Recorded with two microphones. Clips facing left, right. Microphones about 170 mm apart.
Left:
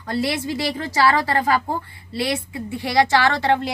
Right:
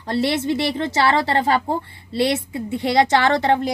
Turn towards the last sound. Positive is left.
turn(degrees=-20)  # may be behind; listen again after turning